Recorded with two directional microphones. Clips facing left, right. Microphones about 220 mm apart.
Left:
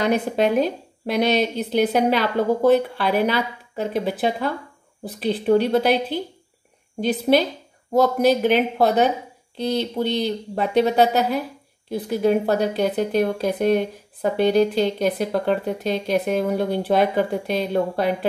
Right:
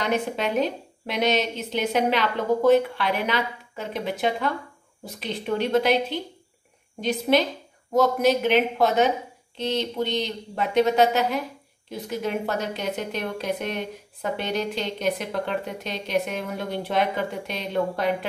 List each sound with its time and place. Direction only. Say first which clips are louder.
0.1 s speech: left 5 dB; 40° left (ahead or behind)